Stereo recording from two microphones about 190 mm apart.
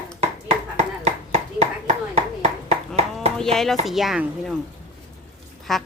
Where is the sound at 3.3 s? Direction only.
Centre (ahead or behind).